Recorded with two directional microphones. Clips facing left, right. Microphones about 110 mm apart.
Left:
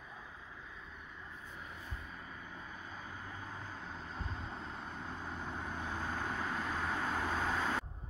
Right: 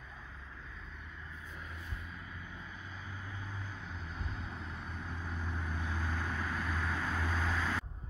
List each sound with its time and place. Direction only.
3.8 s vehicle: 35° left (ahead or behind)